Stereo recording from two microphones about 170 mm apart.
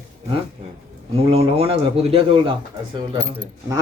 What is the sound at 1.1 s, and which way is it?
A man's voice, 35° right (ahead or behind).